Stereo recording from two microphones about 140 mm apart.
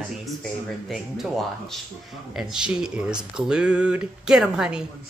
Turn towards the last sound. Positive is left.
turn(degrees=-5)  # may be behind; listen again after turning